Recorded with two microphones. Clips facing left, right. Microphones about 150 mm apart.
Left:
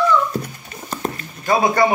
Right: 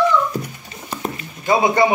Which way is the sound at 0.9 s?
10° right (ahead or behind).